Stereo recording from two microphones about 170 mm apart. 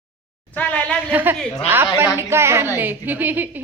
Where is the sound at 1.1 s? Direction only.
10° right (ahead or behind).